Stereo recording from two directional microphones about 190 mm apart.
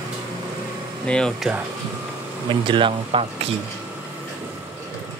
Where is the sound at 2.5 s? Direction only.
25° right (ahead or behind).